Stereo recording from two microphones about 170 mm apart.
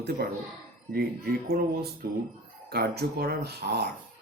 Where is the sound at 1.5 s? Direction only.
65° right (ahead or behind).